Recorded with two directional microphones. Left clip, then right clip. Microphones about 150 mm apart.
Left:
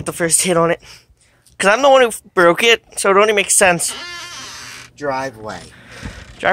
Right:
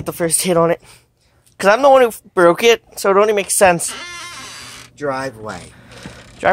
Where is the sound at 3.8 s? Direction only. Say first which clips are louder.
Left 1 dB; 90° right; by 5.6 s 55° right (ahead or behind).